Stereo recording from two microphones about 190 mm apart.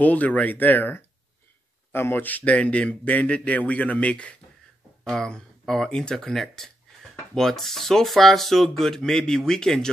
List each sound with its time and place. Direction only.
0.0 s speech: 10° left (ahead or behind)